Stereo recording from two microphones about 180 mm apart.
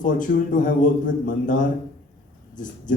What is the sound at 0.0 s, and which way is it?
Speech, 45° left (ahead or behind).